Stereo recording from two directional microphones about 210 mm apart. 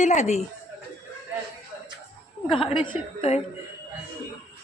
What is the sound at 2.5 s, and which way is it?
Speech, 25° left (ahead or behind).